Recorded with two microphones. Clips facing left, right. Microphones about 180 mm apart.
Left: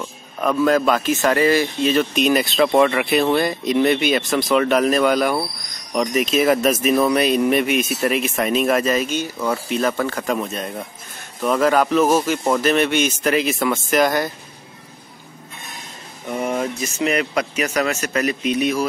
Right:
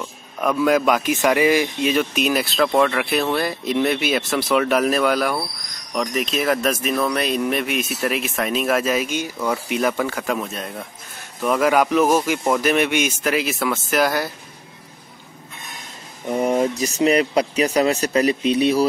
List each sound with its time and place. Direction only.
0.0 s speech: 5° right (ahead or behind)
16.3 s speech: 35° right (ahead or behind)